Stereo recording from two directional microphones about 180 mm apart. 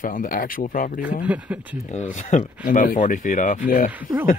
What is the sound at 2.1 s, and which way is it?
Speech, 40° left (ahead or behind).